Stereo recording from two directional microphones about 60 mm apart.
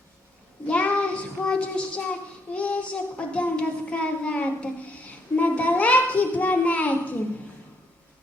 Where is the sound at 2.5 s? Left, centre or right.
Left.